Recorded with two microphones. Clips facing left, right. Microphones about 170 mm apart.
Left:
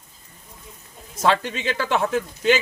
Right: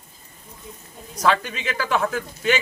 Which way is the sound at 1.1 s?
25° left (ahead or behind).